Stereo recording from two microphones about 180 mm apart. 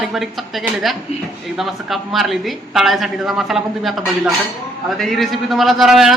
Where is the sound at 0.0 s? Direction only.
Centre (ahead or behind).